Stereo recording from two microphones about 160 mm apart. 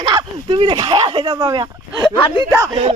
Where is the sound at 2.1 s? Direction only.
35° left (ahead or behind).